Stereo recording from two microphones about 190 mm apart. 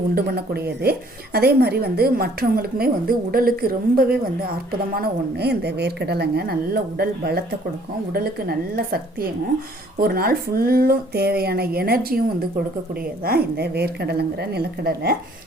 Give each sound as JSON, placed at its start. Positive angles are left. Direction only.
{"t": 0.1, "sound": "a woman's voice", "side_deg": -55}